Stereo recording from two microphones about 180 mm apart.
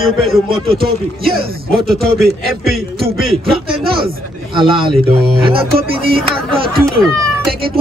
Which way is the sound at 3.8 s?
30° right (ahead or behind).